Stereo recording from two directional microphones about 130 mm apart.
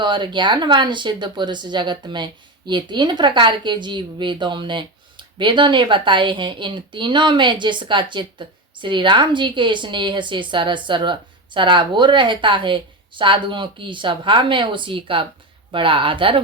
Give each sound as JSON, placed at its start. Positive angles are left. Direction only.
{"t": 0.0, "sound": "speech", "side_deg": -35}